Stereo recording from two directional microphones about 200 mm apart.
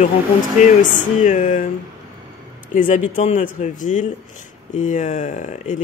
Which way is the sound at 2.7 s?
40° left (ahead or behind).